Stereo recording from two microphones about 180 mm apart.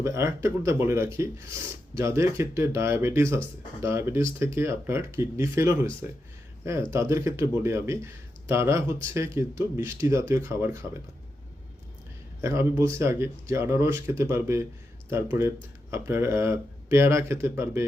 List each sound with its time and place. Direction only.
0.0 s speech: 15° right (ahead or behind)
12.4 s speech: 15° right (ahead or behind)